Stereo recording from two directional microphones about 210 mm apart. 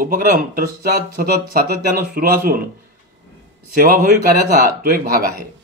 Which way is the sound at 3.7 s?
45° right (ahead or behind).